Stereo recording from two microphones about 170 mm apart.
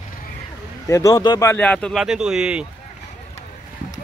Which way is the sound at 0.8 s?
20° left (ahead or behind).